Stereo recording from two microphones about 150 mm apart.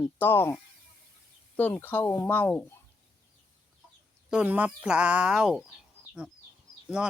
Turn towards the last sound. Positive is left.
turn(degrees=-5)  # may be behind; listen again after turning